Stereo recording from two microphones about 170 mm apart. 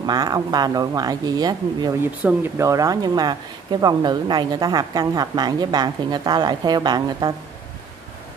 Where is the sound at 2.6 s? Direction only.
20° right (ahead or behind).